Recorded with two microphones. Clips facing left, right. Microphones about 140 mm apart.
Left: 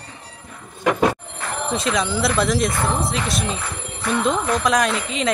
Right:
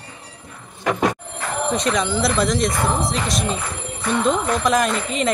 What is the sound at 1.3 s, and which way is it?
Speech, 5° left (ahead or behind).